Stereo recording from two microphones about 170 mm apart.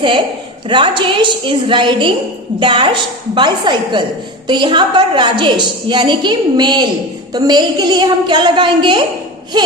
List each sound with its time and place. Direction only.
0.7 s a woman's voice: 30° right (ahead or behind)